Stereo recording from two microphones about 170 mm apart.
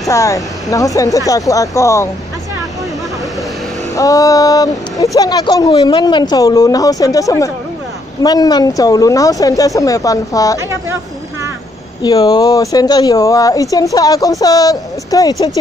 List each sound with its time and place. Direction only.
0.1 s speech: 20° left (ahead or behind)
3.9 s speech: 20° left (ahead or behind)
12.0 s speech: 25° left (ahead or behind)